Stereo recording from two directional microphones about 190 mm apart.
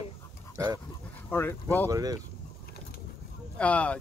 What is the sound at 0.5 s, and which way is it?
Dog, 20° right (ahead or behind).